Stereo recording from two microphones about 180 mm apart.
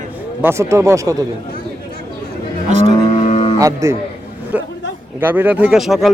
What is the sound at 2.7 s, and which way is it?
Speech, 40° right (ahead or behind).